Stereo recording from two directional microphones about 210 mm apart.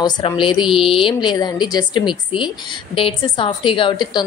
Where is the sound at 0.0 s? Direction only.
25° left (ahead or behind).